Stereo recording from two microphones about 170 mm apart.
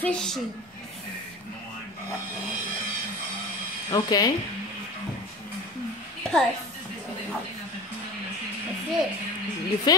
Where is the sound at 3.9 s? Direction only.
25° left (ahead or behind).